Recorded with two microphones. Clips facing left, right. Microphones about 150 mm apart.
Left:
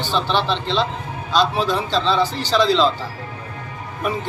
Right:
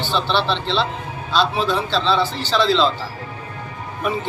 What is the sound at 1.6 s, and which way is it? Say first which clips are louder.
Speech: even; 40° left (ahead or behind).